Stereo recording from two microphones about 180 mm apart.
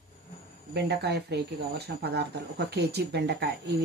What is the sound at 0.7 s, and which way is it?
Speech, 65° right (ahead or behind).